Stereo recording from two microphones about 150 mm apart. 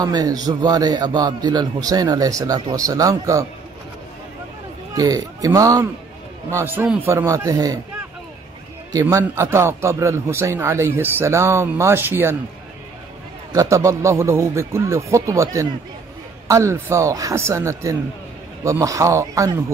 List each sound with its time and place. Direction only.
0.0 s a man's voice: 25° right (ahead or behind)
4.9 s a man's voice: 25° right (ahead or behind)
9.0 s a man's voice: 15° right (ahead or behind)
13.5 s a man's voice: 20° right (ahead or behind)